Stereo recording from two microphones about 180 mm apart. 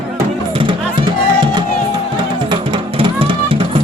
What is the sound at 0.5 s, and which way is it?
Music, 30° right (ahead or behind).